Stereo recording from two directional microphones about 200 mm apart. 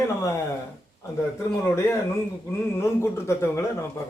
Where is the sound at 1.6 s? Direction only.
15° left (ahead or behind).